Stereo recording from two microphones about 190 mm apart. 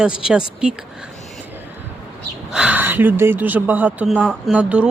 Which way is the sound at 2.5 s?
5° right (ahead or behind).